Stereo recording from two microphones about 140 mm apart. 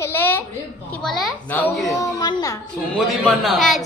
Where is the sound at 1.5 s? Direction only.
20° left (ahead or behind).